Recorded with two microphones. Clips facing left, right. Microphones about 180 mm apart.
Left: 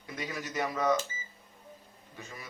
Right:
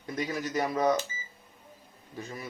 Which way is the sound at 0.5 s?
40° right (ahead or behind).